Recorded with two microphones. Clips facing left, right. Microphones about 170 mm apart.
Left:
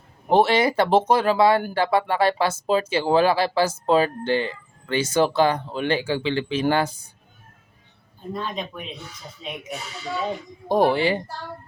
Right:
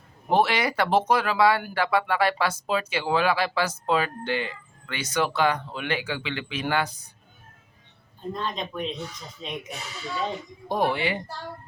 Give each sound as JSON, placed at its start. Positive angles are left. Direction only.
{"t": 0.3, "sound": "speech", "side_deg": 30}
{"t": 8.3, "sound": "speech", "side_deg": 5}
{"t": 10.7, "sound": "speech", "side_deg": 35}